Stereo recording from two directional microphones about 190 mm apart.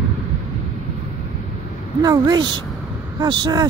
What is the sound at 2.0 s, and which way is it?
A woman's voice, 20° right (ahead or behind).